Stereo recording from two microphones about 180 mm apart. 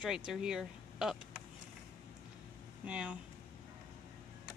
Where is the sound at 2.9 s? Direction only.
5° right (ahead or behind).